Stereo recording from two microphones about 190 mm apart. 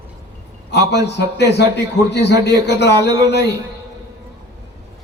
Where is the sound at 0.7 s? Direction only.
65° left (ahead or behind).